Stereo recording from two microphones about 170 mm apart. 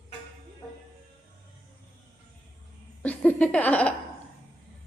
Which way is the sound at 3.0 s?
10° left (ahead or behind).